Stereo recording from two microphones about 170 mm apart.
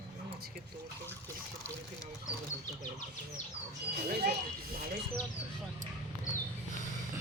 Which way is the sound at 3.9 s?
70° right (ahead or behind).